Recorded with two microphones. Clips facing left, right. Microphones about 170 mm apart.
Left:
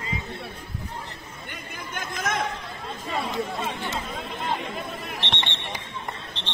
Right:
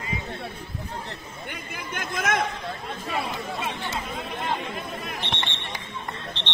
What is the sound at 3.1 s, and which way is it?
Chatter, 5° right (ahead or behind).